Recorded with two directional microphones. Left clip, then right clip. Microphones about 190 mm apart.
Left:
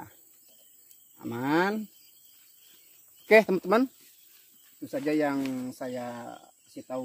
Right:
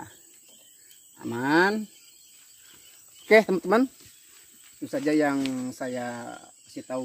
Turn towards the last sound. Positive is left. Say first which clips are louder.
# right 3 dB
turn(degrees=5)  # may be behind; listen again after turning